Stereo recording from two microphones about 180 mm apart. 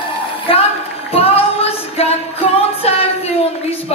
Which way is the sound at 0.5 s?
30° left (ahead or behind).